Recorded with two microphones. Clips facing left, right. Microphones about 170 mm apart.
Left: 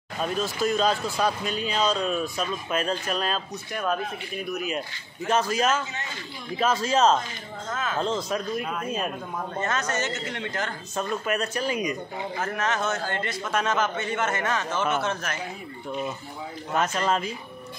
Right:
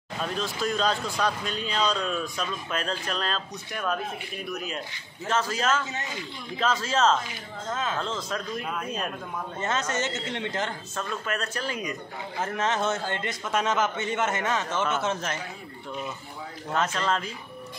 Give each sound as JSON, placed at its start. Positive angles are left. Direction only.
{"t": 0.2, "sound": "speech", "side_deg": 5}
{"t": 8.6, "sound": "speech", "side_deg": 0}
{"t": 9.6, "sound": "a man's voice", "side_deg": -25}
{"t": 11.0, "sound": "speech", "side_deg": 15}
{"t": 12.4, "sound": "a man's voice", "side_deg": -25}
{"t": 14.7, "sound": "speech", "side_deg": 15}
{"t": 15.3, "sound": "a man's voice", "side_deg": -25}
{"t": 16.7, "sound": "speech", "side_deg": 10}